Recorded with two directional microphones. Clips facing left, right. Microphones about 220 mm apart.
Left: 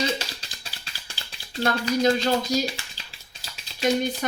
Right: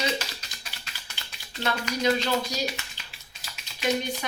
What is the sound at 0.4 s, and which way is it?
Music, 30° left (ahead or behind).